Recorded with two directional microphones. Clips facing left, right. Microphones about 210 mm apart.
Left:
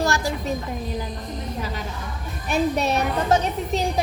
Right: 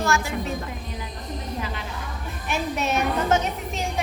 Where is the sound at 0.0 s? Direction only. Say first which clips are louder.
Left 1 dB; 35° left (ahead or behind).